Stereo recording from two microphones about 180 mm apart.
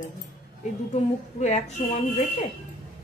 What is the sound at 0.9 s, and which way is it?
Speech, 40° left (ahead or behind).